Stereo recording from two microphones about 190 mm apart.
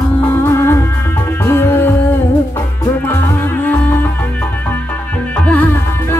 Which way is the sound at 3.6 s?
10° left (ahead or behind).